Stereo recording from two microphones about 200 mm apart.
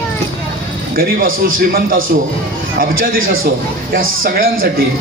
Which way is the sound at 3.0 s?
45° right (ahead or behind).